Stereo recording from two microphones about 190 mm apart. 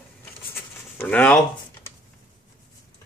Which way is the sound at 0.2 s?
10° left (ahead or behind).